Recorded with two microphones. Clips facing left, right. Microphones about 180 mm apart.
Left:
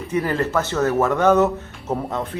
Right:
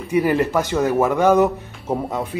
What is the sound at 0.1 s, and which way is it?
Speech, 10° right (ahead or behind).